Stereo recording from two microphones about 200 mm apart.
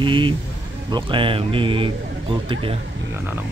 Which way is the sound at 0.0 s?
25° right (ahead or behind).